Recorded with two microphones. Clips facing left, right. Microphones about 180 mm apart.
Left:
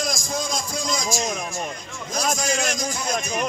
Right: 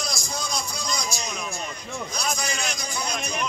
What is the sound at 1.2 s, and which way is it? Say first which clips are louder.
A man's voice: left 5 dB; 45° left (ahead or behind).